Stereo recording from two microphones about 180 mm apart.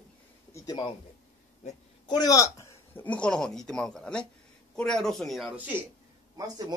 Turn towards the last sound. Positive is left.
turn(degrees=-20)  # may be behind; listen again after turning